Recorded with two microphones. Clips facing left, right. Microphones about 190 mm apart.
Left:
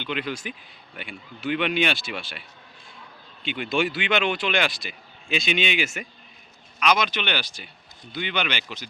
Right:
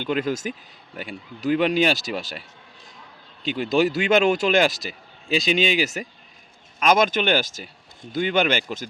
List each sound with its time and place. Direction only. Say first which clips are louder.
0.0 s speech: right 6 dB; 40° right (ahead or behind)
3.4 s speech: right 5 dB; 40° right (ahead or behind)